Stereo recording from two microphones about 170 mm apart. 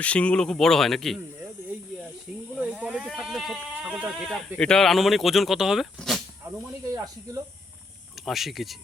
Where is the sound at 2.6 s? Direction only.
5° right (ahead or behind).